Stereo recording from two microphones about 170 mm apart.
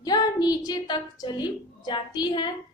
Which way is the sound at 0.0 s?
25° left (ahead or behind).